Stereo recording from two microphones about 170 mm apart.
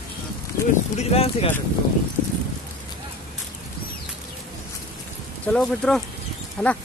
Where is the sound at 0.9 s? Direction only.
35° left (ahead or behind).